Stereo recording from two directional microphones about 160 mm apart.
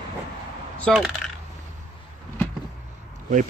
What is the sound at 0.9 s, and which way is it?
Speech, 5° left (ahead or behind).